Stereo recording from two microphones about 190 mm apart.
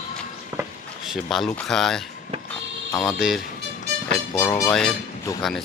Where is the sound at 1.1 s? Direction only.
Centre (ahead or behind).